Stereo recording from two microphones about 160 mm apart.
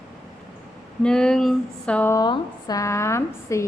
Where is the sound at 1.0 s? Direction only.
5° left (ahead or behind).